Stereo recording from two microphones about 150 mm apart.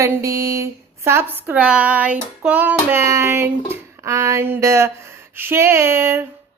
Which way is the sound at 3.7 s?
20° right (ahead or behind).